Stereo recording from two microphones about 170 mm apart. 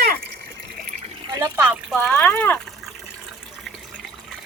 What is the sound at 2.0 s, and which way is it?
Speech, 5° left (ahead or behind).